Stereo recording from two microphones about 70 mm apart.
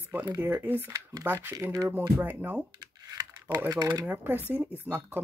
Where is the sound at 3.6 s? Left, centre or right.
Right.